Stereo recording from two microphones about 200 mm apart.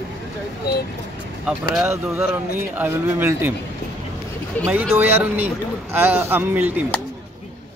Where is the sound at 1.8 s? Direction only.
15° right (ahead or behind).